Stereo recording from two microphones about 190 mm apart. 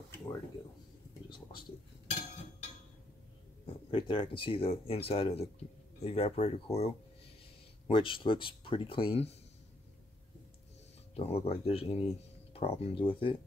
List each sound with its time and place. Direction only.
1.3 s speech: 25° left (ahead or behind)
3.6 s speech: 25° left (ahead or behind)
7.9 s speech: 25° left (ahead or behind)
11.1 s speech: 30° left (ahead or behind)